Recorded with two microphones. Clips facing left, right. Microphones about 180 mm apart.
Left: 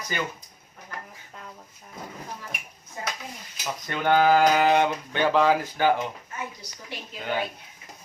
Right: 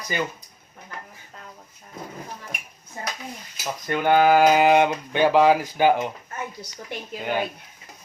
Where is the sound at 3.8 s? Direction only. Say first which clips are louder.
Right 3 dB; 10° right (ahead or behind).